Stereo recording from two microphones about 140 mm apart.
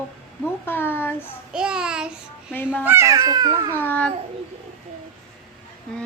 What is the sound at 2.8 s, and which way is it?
Speech, 20° right (ahead or behind).